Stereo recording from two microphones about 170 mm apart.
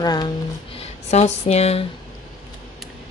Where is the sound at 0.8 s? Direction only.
40° left (ahead or behind).